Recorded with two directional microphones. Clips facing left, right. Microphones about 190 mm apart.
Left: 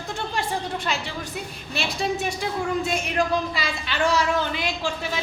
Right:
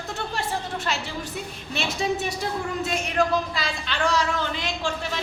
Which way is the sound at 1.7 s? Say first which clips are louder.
Even; centre (ahead or behind).